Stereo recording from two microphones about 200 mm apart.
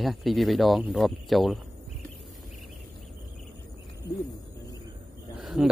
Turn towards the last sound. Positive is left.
turn(degrees=0)  # may be behind; listen again after turning